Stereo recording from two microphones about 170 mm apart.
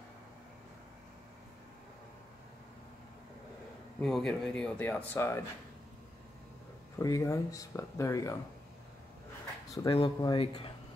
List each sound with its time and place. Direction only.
4.0 s speech: centre (ahead or behind)
7.0 s speech: 20° left (ahead or behind)
9.8 s speech: 30° left (ahead or behind)